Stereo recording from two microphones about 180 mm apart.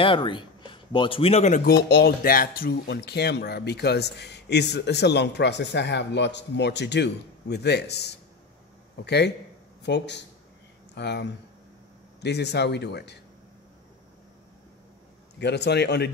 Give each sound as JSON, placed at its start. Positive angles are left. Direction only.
{"t": 0.0, "sound": "a man's voice", "side_deg": 30}
{"t": 1.7, "sound": "speech", "side_deg": 60}
{"t": 15.3, "sound": "speech", "side_deg": 70}